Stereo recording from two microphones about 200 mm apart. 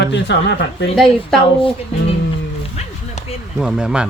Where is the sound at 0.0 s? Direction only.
60° left (ahead or behind).